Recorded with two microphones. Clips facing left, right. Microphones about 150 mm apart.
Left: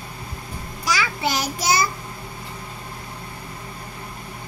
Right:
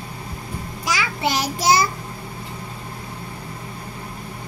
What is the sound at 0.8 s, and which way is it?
Child singing, 25° right (ahead or behind).